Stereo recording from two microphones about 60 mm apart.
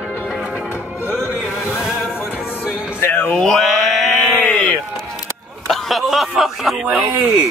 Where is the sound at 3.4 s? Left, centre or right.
Centre.